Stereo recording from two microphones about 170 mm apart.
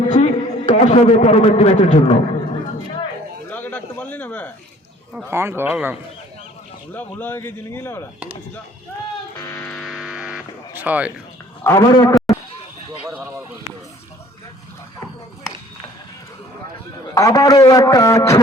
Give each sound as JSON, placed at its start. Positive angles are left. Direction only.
{"t": 0.1, "sound": "a man's voice", "side_deg": 45}
{"t": 3.5, "sound": "a sound", "side_deg": 10}
{"t": 5.3, "sound": "speech", "side_deg": -15}
{"t": 6.9, "sound": "a man's voice", "side_deg": 10}
{"t": 9.4, "sound": "a man's voice", "side_deg": 20}
{"t": 9.6, "sound": "a sound", "side_deg": 0}
{"t": 10.8, "sound": "speech", "side_deg": -10}
{"t": 11.6, "sound": "a man's voice", "side_deg": 20}
{"t": 17.2, "sound": "a man's voice", "side_deg": 20}